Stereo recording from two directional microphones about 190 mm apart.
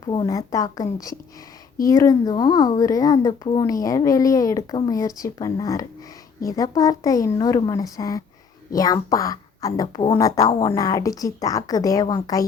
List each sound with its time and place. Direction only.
0.0 s speech: 25° left (ahead or behind)